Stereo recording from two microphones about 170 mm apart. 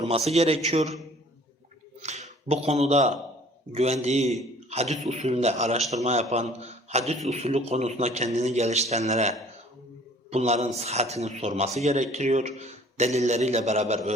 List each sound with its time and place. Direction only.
0.0 s a man's voice: 40° right (ahead or behind)
2.0 s a man's voice: 40° right (ahead or behind)